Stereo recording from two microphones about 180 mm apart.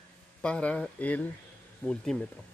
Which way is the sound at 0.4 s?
5° left (ahead or behind).